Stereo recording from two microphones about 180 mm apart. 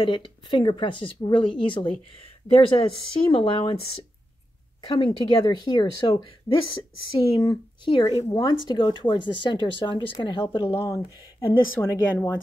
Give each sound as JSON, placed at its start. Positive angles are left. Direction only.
{"t": 0.0, "sound": "speech", "side_deg": 25}
{"t": 10.7, "sound": "speech", "side_deg": 15}